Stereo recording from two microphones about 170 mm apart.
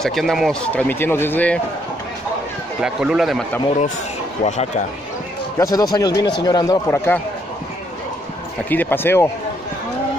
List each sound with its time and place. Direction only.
0.0 s a man's voice: centre (ahead or behind)
2.8 s a man's voice: 5° right (ahead or behind)
4.5 s speech: 45° left (ahead or behind)
5.6 s speech: 20° left (ahead or behind)
8.6 s a man's voice: 10° left (ahead or behind)